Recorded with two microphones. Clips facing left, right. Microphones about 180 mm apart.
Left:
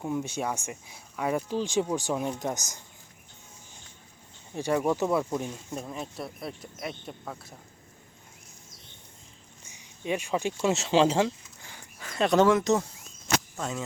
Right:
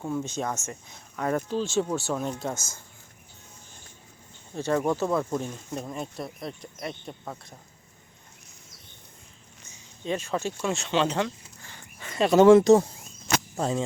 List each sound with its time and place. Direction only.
0.0 s speech: 15° left (ahead or behind)
4.5 s speech: 15° left (ahead or behind)
9.6 s speech: 15° left (ahead or behind); by 11.3 s 30° left (ahead or behind)
11.6 s dog: 10° left (ahead or behind)
12.0 s speech: centre (ahead or behind)
12.5 s speech: 30° right (ahead or behind)